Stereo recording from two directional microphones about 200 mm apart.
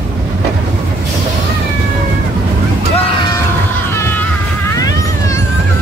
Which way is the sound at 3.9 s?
15° left (ahead or behind).